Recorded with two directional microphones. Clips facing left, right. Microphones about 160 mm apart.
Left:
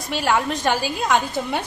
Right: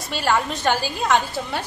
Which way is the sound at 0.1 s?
10° left (ahead or behind).